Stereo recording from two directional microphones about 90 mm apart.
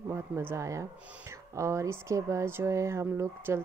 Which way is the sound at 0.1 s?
25° right (ahead or behind).